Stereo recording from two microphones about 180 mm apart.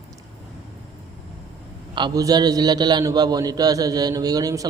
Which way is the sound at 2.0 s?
25° right (ahead or behind).